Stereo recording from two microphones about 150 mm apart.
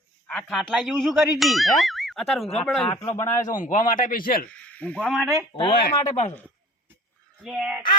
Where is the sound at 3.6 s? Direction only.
60° left (ahead or behind).